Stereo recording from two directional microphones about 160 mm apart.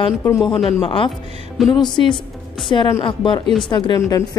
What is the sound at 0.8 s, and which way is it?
A woman's voice, 30° left (ahead or behind).